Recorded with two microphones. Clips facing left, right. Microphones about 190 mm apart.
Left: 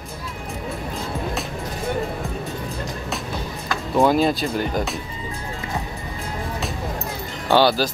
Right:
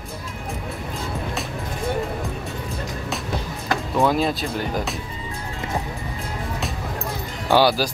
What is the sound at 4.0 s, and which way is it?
Speech, centre (ahead or behind).